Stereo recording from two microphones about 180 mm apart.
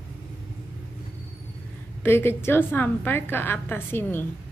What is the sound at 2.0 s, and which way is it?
A woman's voice, 15° left (ahead or behind).